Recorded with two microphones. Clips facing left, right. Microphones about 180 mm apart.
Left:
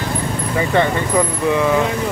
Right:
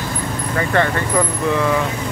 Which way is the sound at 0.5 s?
15° left (ahead or behind).